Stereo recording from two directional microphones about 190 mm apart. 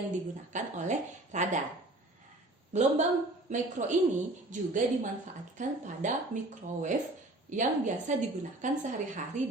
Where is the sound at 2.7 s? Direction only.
40° right (ahead or behind).